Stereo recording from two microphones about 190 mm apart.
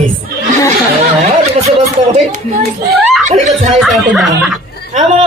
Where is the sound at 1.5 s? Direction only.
30° right (ahead or behind).